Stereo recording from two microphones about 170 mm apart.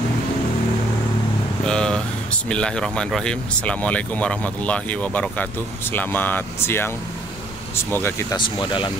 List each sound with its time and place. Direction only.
1.6 s vehicle: 5° left (ahead or behind)
2.4 s speech: 5° left (ahead or behind)
8.4 s speech: 30° left (ahead or behind)